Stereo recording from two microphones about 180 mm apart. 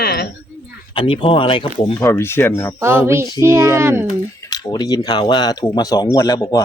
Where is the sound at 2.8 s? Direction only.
15° right (ahead or behind).